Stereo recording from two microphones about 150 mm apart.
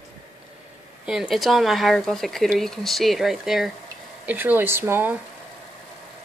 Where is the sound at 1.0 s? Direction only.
5° right (ahead or behind).